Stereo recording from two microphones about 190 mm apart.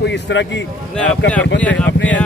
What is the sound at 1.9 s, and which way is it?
Speech, 75° left (ahead or behind).